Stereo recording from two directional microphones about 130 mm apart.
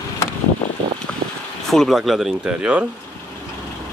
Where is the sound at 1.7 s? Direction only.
Centre (ahead or behind).